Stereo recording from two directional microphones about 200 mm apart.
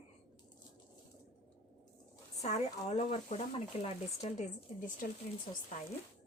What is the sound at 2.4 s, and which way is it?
A woman's voice, 35° left (ahead or behind).